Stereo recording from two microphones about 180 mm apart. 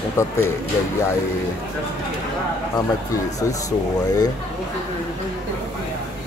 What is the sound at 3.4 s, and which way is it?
Speech, 20° left (ahead or behind).